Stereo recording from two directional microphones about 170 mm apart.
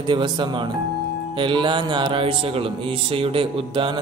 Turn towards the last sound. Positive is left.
turn(degrees=-30)  # may be behind; listen again after turning